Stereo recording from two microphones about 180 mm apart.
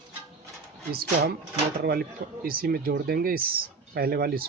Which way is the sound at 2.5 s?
55° right (ahead or behind).